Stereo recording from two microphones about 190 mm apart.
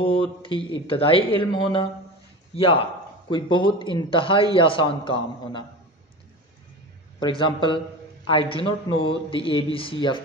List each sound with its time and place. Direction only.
0.0 s a man's voice: 30° left (ahead or behind)
7.2 s a man's voice: 25° left (ahead or behind)